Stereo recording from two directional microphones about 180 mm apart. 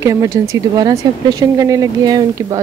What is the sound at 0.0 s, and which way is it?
Speech, 15° right (ahead or behind).